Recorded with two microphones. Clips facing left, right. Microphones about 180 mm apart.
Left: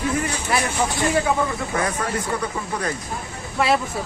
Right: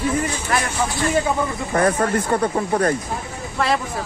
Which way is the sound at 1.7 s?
50° right (ahead or behind).